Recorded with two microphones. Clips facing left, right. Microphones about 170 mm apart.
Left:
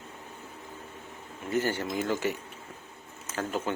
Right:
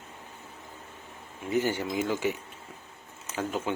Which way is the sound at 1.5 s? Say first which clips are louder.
Right 1 dB; 10° right (ahead or behind).